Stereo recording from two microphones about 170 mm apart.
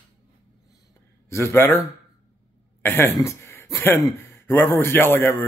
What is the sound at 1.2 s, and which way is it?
Speech, 15° left (ahead or behind).